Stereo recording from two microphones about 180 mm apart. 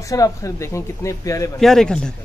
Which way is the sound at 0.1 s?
20° left (ahead or behind).